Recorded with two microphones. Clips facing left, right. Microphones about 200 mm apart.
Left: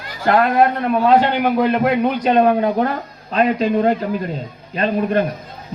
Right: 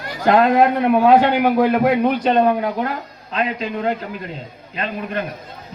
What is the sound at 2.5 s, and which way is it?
Speech, 25° left (ahead or behind).